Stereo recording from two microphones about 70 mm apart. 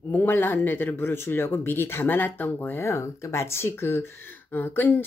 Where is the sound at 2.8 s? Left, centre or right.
Left.